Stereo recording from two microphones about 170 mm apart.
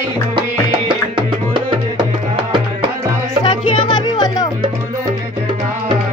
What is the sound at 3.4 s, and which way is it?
Music, 25° left (ahead or behind).